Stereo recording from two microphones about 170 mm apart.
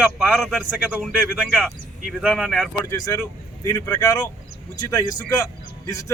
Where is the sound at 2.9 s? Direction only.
20° left (ahead or behind).